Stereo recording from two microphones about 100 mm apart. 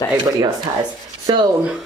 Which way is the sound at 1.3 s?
45° right (ahead or behind).